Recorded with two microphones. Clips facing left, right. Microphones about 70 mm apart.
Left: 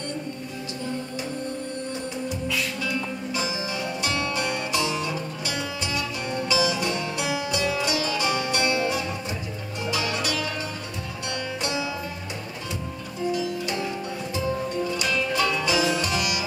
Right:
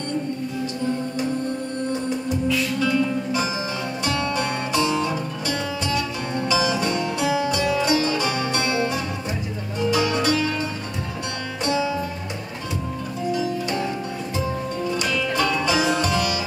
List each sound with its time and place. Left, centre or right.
1.9 s music: right
4.0 s music: right
6.3 s music: right
13.3 s music: right